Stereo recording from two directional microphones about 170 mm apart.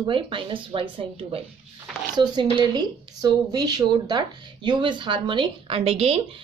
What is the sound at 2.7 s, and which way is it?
Speech, 25° right (ahead or behind).